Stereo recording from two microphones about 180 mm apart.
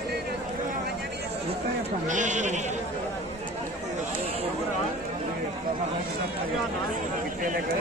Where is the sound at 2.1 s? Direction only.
45° right (ahead or behind).